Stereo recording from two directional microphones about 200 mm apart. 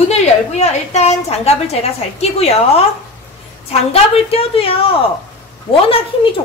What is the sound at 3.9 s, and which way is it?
A woman's voice, 30° left (ahead or behind).